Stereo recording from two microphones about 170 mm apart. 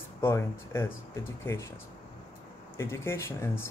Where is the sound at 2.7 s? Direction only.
15° left (ahead or behind).